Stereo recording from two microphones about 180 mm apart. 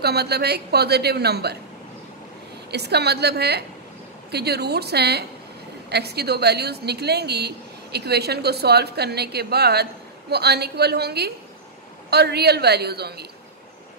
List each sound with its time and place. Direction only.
0.0 s a woman's voice: 65° right (ahead or behind)
2.7 s a woman's voice: 65° right (ahead or behind)